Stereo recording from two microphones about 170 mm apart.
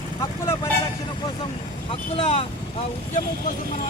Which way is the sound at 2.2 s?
35° left (ahead or behind).